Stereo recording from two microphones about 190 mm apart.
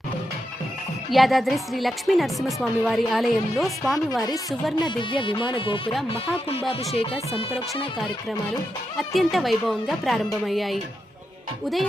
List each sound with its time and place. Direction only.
1.1 s a woman's voice: centre (ahead or behind)
4.8 s music: 25° left (ahead or behind)
6.7 s speech: 30° left (ahead or behind)
9.0 s a woman's voice: centre (ahead or behind)